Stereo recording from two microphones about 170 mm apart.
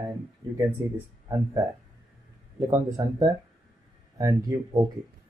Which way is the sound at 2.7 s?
20° right (ahead or behind).